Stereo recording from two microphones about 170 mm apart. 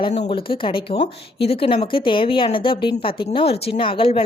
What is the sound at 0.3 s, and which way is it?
A woman's voice, 30° left (ahead or behind).